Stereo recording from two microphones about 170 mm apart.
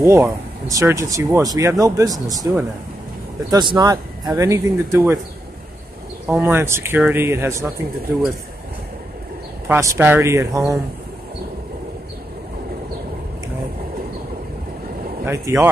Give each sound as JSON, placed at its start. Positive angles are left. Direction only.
{"t": 0.0, "sound": "speech", "side_deg": -15}
{"t": 6.2, "sound": "speech", "side_deg": -15}
{"t": 9.7, "sound": "speech", "side_deg": -15}
{"t": 15.2, "sound": "speech", "side_deg": -15}